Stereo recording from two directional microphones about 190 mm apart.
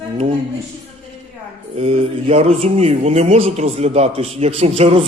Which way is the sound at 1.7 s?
30° right (ahead or behind).